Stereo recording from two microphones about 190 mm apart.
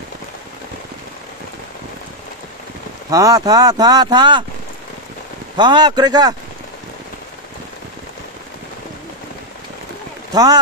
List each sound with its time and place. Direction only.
3.1 s speech: 20° right (ahead or behind)
5.6 s speech: 20° right (ahead or behind)
10.3 s speech: 20° right (ahead or behind)